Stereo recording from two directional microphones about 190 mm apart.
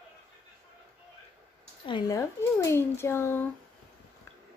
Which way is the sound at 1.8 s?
20° left (ahead or behind).